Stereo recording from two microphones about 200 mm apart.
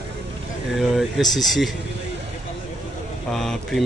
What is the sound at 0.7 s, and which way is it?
Speech, centre (ahead or behind).